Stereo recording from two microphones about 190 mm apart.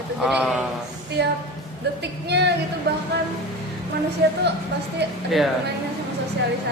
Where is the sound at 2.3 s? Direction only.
60° right (ahead or behind).